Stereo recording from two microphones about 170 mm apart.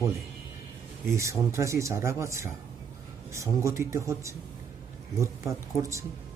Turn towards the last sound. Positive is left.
turn(degrees=-15)  # may be behind; listen again after turning